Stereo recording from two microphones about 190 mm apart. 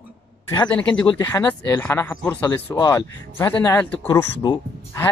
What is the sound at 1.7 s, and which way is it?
Speech, 10° left (ahead or behind).